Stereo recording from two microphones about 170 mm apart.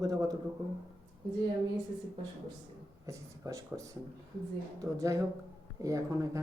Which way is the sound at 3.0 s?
20° right (ahead or behind).